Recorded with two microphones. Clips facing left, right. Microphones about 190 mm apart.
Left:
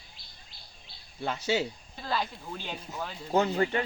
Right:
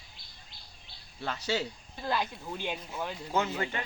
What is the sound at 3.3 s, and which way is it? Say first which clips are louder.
Speech: left 6 dB; 35° left (ahead or behind).